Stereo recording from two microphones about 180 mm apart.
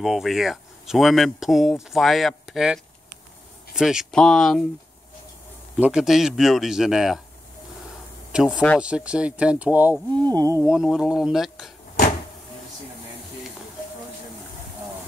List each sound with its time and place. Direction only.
0.0 s speech: centre (ahead or behind)
5.8 s speech: 5° right (ahead or behind)
8.3 s speech: 5° right (ahead or behind)
10.1 s speech: 20° right (ahead or behind)
10.6 s speech: 5° right (ahead or behind)